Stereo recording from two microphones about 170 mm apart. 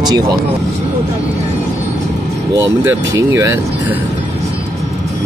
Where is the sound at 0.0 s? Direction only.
25° right (ahead or behind).